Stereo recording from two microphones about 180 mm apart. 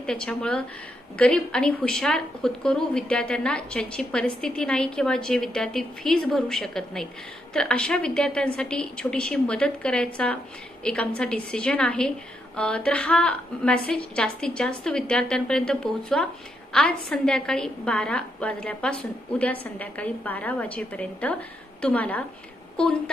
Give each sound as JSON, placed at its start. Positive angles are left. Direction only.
{"t": 0.0, "sound": "a woman's voice", "side_deg": 5}